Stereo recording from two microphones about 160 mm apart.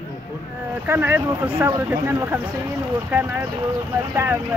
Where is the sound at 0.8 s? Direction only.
15° right (ahead or behind).